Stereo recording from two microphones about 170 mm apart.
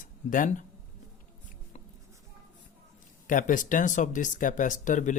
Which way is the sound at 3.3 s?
50° left (ahead or behind).